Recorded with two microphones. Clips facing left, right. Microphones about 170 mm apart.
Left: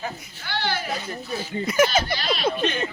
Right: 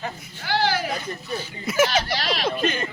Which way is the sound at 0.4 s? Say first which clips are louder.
Right 5 dB; 90° right.